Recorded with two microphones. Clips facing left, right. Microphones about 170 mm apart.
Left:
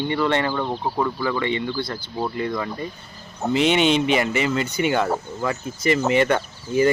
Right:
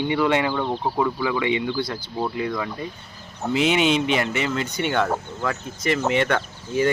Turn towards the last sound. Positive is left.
turn(degrees=5)  # may be behind; listen again after turning